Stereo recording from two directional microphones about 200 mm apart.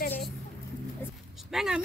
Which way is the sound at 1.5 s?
Centre (ahead or behind).